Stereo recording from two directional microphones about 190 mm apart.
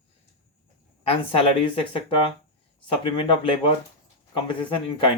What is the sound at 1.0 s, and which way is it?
Speech, 30° left (ahead or behind).